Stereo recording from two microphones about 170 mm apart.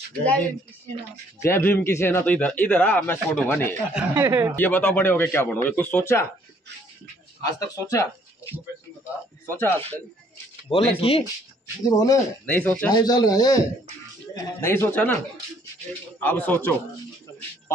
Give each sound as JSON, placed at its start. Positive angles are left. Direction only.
{"t": 0.2, "sound": "a man's voice", "side_deg": 5}
{"t": 3.9, "sound": "speech", "side_deg": -15}
{"t": 4.6, "sound": "a man's voice", "side_deg": 10}
{"t": 7.4, "sound": "a man's voice", "side_deg": 20}
{"t": 10.7, "sound": "speech", "side_deg": 35}
{"t": 11.8, "sound": "speech", "side_deg": 20}
{"t": 12.9, "sound": "a man's voice", "side_deg": 25}